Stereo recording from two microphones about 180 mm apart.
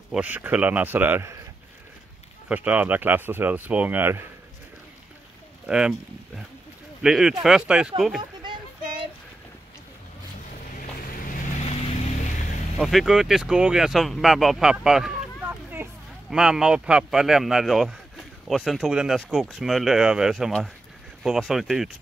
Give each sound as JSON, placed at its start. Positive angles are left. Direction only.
{"t": 0.1, "sound": "speech", "side_deg": -10}
{"t": 2.4, "sound": "speech", "side_deg": -5}
{"t": 5.7, "sound": "speech", "side_deg": -5}
{"t": 8.4, "sound": "child singing", "side_deg": -25}
{"t": 10.8, "sound": "vehicle", "side_deg": 50}
{"t": 12.7, "sound": "speech", "side_deg": 0}